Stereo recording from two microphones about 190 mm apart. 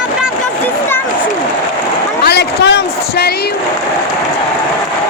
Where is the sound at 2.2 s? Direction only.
60° left (ahead or behind).